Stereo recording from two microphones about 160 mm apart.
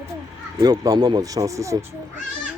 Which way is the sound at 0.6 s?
25° right (ahead or behind).